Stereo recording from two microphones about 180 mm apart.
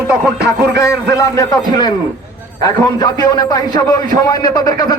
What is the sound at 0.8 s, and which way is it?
A man's voice, 20° left (ahead or behind).